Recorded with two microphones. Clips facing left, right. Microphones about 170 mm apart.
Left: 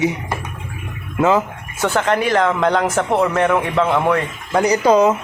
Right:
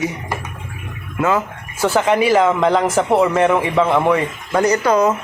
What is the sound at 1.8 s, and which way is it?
Speech, 5° right (ahead or behind).